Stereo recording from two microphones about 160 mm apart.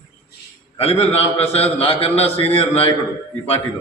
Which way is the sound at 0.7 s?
40° left (ahead or behind).